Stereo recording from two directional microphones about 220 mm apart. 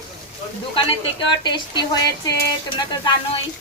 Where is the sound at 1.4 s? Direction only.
20° left (ahead or behind).